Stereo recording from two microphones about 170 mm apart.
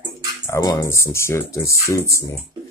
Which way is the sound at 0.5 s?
20° left (ahead or behind).